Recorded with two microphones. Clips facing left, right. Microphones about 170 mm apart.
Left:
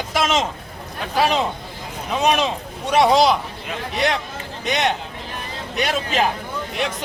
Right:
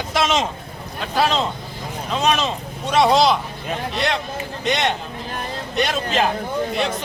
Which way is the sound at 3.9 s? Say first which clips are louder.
Left 4 dB; 10° left (ahead or behind).